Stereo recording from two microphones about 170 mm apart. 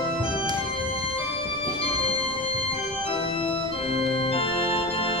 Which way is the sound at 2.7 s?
30° left (ahead or behind).